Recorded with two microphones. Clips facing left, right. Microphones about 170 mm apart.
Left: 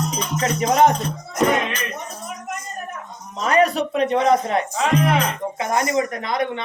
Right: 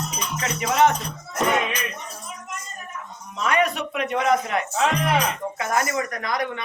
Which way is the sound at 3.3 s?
35° left (ahead or behind).